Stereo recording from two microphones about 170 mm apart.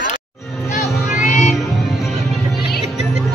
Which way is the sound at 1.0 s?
Centre (ahead or behind).